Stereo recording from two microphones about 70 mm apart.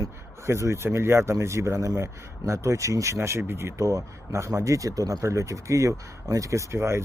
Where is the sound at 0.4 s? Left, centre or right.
Right.